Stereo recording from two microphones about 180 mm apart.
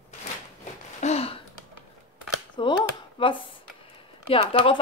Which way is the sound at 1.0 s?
35° left (ahead or behind).